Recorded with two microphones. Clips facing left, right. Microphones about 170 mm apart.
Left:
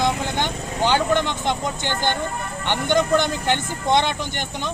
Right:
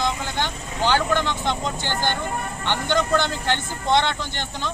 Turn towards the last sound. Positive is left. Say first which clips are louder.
# left 2 dB
turn(degrees=15)  # may be behind; listen again after turning